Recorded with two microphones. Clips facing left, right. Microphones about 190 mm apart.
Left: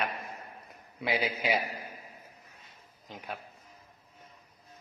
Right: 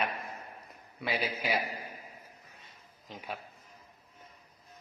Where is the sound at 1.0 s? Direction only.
20° left (ahead or behind).